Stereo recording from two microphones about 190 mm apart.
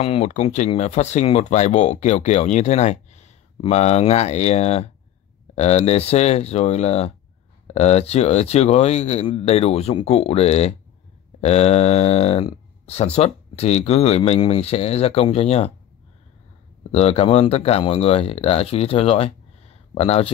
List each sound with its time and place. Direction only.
0.0 s speech: 35° left (ahead or behind)
16.9 s speech: 30° left (ahead or behind)